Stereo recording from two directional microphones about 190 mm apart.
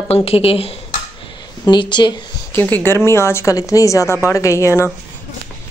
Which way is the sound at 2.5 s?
10° left (ahead or behind).